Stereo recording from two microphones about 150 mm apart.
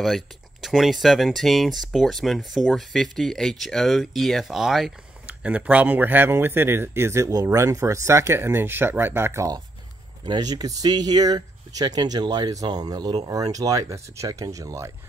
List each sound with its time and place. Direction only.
0.0 s speech: centre (ahead or behind); by 14.9 s 20° right (ahead or behind)